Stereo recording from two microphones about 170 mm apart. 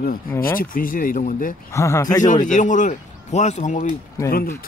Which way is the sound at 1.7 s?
15° left (ahead or behind).